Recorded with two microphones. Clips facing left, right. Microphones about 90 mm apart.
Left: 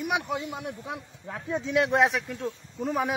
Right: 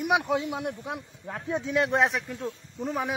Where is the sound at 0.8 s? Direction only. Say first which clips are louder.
Right 1 dB; centre (ahead or behind).